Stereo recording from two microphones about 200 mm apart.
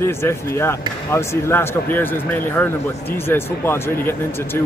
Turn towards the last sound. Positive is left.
turn(degrees=10)  # may be behind; listen again after turning